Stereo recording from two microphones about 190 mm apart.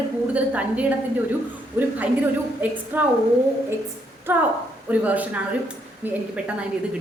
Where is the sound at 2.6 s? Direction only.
10° right (ahead or behind).